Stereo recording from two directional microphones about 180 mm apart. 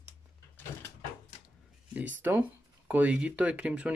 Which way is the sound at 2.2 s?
10° right (ahead or behind).